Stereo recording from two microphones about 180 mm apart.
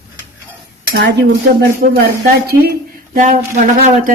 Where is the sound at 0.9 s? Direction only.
85° right.